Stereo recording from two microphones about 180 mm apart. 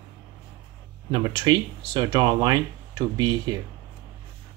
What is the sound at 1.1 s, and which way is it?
Speech, 25° right (ahead or behind).